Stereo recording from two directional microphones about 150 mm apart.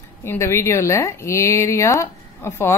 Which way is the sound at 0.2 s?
20° left (ahead or behind).